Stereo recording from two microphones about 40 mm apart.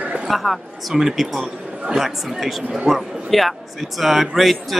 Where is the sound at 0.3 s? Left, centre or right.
Centre.